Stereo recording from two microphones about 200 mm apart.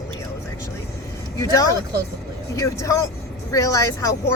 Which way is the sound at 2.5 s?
15° left (ahead or behind).